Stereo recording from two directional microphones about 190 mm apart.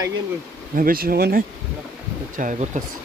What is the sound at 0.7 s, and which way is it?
Speech, 50° right (ahead or behind).